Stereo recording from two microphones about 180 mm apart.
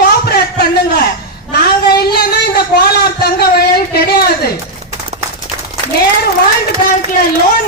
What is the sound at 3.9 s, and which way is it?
Speech, 60° left (ahead or behind).